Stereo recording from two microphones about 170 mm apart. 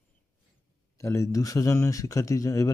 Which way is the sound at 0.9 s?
15° left (ahead or behind).